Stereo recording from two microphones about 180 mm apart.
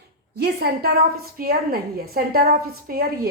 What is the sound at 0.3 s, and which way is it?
A woman's voice, 65° right (ahead or behind).